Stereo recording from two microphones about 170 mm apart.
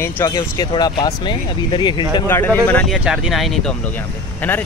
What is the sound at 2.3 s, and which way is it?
Speech, 10° left (ahead or behind).